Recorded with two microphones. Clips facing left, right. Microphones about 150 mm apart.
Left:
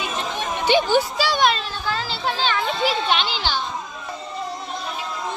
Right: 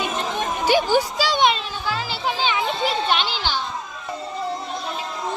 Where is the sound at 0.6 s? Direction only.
10° right (ahead or behind).